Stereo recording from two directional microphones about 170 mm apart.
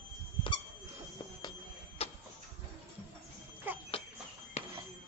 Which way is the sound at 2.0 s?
35° left (ahead or behind).